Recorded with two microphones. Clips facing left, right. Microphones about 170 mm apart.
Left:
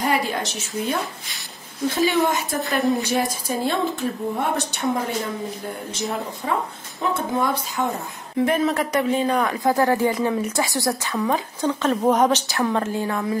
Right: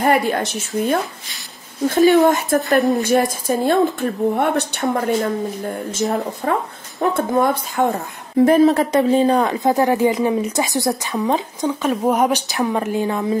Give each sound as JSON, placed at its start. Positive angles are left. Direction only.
{"t": 0.0, "sound": "speech", "side_deg": -55}
{"t": 2.0, "sound": "speech", "side_deg": 0}
{"t": 3.6, "sound": "a woman's voice", "side_deg": -55}
{"t": 6.0, "sound": "speech", "side_deg": -45}
{"t": 6.4, "sound": "a woman's voice", "side_deg": -55}
{"t": 8.5, "sound": "a woman's voice", "side_deg": -30}